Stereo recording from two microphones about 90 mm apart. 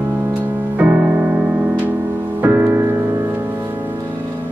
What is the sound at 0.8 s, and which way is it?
Music, 15° right (ahead or behind).